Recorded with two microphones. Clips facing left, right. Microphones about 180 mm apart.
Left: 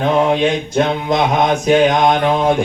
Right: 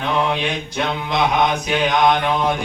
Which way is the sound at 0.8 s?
45° left (ahead or behind).